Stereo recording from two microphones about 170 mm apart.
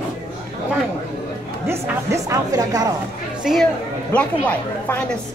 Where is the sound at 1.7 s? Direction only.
15° right (ahead or behind).